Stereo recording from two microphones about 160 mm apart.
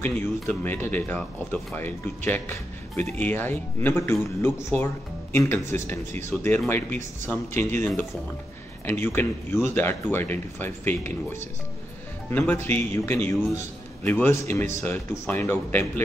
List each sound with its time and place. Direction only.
0.0 s speech: 10° left (ahead or behind)